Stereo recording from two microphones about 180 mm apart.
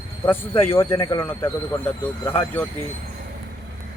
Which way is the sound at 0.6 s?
15° left (ahead or behind).